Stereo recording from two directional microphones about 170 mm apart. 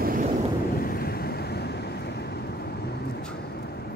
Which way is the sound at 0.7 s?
60° left (ahead or behind).